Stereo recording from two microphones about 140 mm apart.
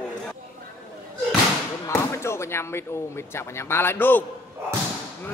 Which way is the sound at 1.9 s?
20° left (ahead or behind).